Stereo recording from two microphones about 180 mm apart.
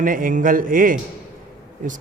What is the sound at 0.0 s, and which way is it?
A man's voice, 50° right (ahead or behind).